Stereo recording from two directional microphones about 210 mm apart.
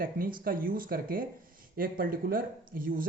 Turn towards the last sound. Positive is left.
turn(degrees=-40)  # may be behind; listen again after turning